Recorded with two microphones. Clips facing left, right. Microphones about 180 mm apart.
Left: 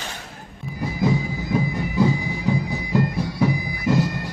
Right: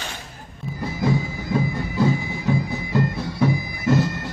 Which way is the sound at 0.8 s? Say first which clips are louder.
Left 1 dB; 20° left (ahead or behind).